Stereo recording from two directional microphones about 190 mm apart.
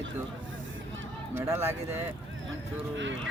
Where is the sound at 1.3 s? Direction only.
15° right (ahead or behind).